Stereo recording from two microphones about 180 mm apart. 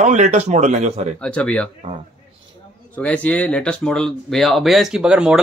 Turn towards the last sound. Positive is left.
turn(degrees=-5)  # may be behind; listen again after turning